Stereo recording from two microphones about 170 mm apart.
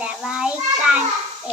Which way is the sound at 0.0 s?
5° right (ahead or behind).